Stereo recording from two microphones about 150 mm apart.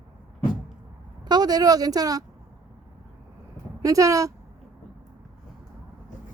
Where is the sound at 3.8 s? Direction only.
20° right (ahead or behind).